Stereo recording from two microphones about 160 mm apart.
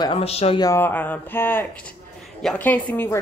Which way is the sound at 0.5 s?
20° left (ahead or behind).